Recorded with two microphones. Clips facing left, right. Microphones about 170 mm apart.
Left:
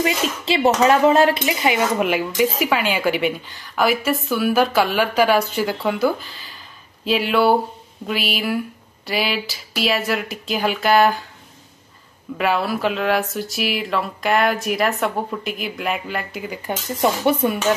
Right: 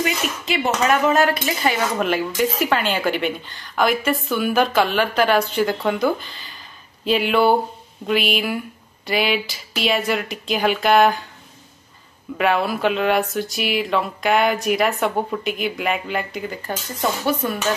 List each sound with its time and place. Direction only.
0.0 s a woman's voice: 25° left (ahead or behind); by 11.2 s centre (ahead or behind)
12.4 s speech: centre (ahead or behind)
16.6 s a woman's voice: 15° left (ahead or behind)